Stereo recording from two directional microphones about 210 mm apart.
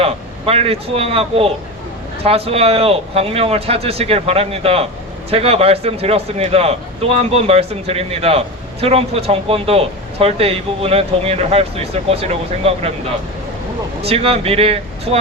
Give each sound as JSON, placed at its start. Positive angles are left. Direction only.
{"t": 0.0, "sound": "speech", "side_deg": -30}
{"t": 14.0, "sound": "speech", "side_deg": -30}